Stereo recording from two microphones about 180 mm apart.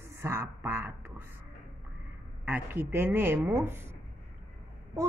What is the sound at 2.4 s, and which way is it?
A man's voice, 10° right (ahead or behind).